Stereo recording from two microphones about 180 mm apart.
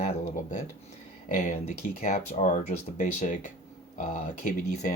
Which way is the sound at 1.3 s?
45° left (ahead or behind).